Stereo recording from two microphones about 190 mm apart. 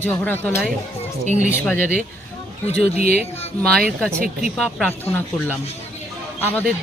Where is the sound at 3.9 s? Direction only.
Centre (ahead or behind).